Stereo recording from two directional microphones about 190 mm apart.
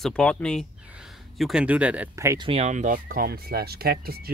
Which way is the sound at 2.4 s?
35° right (ahead or behind).